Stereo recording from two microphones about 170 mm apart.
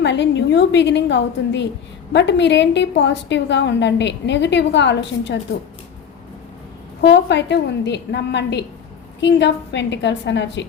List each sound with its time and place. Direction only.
0.0 s a woman's voice: 90° left
7.0 s a woman's voice: 90° left